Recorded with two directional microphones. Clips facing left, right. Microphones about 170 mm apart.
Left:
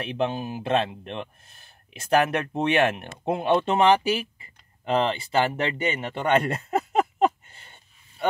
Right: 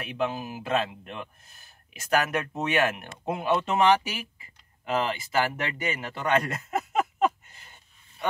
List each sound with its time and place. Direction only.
0.0 s speech: 30° left (ahead or behind)